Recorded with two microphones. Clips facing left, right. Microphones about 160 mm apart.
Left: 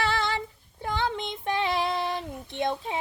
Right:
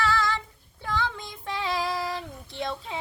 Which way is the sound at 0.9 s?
25° left (ahead or behind).